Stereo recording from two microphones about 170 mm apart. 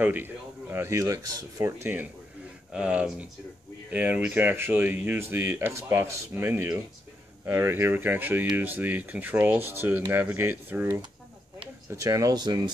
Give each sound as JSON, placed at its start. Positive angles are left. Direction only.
{"t": 0.0, "sound": "speech", "side_deg": -10}